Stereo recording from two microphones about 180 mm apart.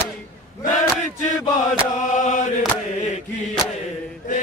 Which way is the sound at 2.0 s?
45° left (ahead or behind).